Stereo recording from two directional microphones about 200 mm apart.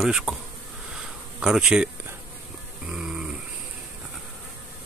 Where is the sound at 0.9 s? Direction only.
5° right (ahead or behind).